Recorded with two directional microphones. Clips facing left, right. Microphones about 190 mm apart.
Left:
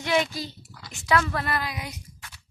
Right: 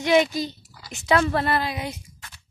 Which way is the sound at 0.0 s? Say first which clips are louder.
Right 6 dB; 20° right (ahead or behind).